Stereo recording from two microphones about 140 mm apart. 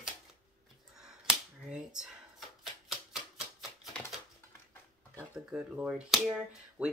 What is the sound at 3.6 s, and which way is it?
Typewriter, centre (ahead or behind).